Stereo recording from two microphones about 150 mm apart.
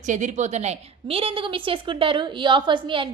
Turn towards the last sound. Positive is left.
turn(degrees=-35)  # may be behind; listen again after turning